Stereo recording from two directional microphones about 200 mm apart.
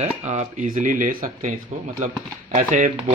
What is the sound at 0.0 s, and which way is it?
Speech, 35° right (ahead or behind).